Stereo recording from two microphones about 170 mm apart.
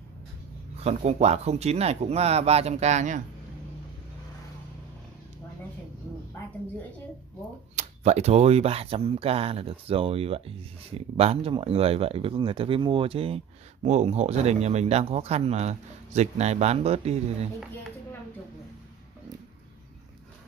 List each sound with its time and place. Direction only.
0.7 s speech: 40° right (ahead or behind)
7.7 s speech: 40° right (ahead or behind)